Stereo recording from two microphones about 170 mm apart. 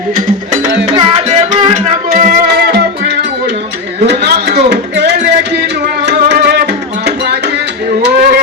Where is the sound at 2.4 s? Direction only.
70° right (ahead or behind).